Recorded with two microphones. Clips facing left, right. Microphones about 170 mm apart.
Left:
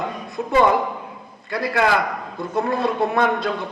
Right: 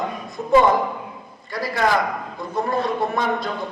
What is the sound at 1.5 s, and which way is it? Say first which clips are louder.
A woman's voice: left 1 dB; 60° left (ahead or behind).